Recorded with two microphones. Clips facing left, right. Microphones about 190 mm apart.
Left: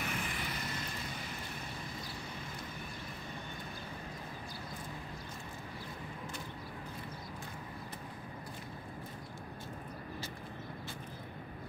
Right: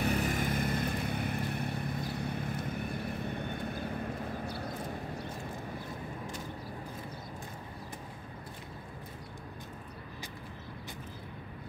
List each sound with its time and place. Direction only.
0.0 s vehicle: 40° right (ahead or behind); by 3.9 s 60° right (ahead or behind)